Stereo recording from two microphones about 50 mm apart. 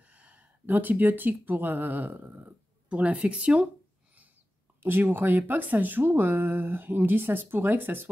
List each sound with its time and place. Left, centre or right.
0.0 s speech: right
2.9 s speech: right
4.8 s speech: right